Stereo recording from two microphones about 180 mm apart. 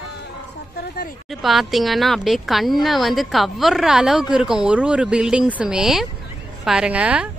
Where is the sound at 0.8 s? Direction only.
55° left (ahead or behind).